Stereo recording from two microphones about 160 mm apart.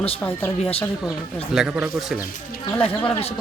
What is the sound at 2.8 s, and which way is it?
Speech, 40° left (ahead or behind).